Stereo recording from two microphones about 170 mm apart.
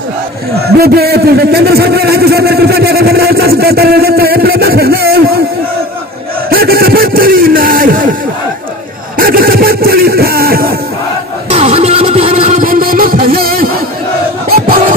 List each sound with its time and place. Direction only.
0.7 s a man's voice: 65° right (ahead or behind)
6.5 s a sound: 60° right (ahead or behind)
9.2 s music: 60° right (ahead or behind)
11.5 s music: 35° right (ahead or behind)
12.6 s music: 55° right (ahead or behind)